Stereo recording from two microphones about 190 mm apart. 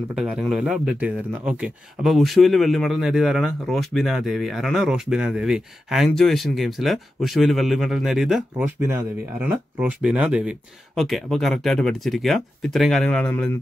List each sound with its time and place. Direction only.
0.1 s speech: 5° right (ahead or behind)